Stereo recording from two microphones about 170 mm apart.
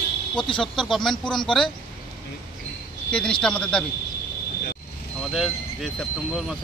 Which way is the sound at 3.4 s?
5° left (ahead or behind).